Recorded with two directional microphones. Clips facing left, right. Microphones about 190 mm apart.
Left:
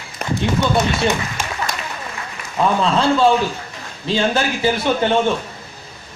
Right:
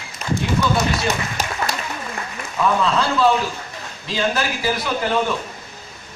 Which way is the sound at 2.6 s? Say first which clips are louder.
Left 2 dB; 30° left (ahead or behind).